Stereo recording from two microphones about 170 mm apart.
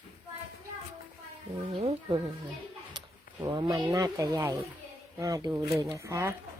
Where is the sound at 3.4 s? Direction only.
25° right (ahead or behind).